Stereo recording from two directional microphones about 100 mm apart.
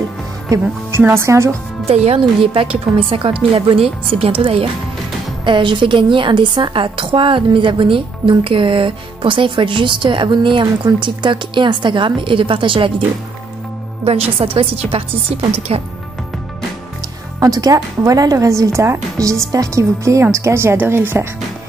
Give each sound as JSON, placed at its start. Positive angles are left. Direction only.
{"t": 1.0, "sound": "a woman's voice", "side_deg": -25}
{"t": 1.9, "sound": "a woman's voice", "side_deg": -90}
{"t": 5.4, "sound": "a woman's voice", "side_deg": -55}
{"t": 14.0, "sound": "a woman's voice", "side_deg": -75}
{"t": 17.4, "sound": "a woman's voice", "side_deg": -35}